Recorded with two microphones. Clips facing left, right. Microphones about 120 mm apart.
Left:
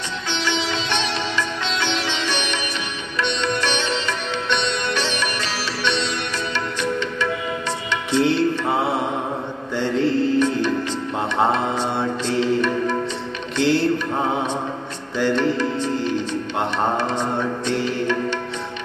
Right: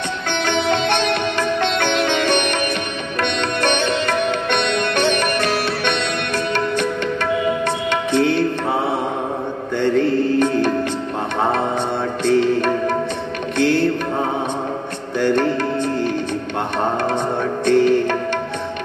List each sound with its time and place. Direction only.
0.3 s sitar: 55° right (ahead or behind)
3.2 s music: 55° right (ahead or behind)
9.8 s music: 55° right (ahead or behind)
12.3 s music: 55° right (ahead or behind)
15.1 s music: 55° right (ahead or behind)
17.6 s music: 55° right (ahead or behind)